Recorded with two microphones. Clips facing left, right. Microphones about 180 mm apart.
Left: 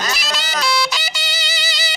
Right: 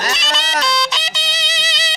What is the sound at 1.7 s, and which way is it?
Music, centre (ahead or behind).